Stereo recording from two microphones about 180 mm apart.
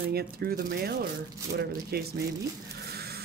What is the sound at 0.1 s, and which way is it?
Speech, 55° right (ahead or behind).